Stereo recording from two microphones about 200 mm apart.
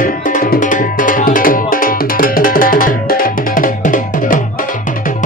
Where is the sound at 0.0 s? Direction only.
40° left (ahead or behind).